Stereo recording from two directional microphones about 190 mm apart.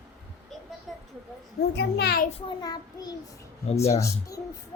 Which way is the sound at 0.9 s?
Centre (ahead or behind).